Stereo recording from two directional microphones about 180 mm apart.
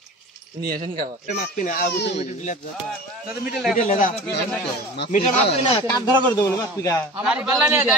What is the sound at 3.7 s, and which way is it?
Speech, 45° left (ahead or behind).